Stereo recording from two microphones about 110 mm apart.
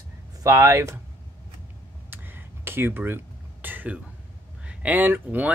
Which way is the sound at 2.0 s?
20° right (ahead or behind).